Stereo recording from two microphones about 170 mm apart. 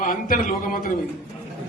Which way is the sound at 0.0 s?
55° left (ahead or behind).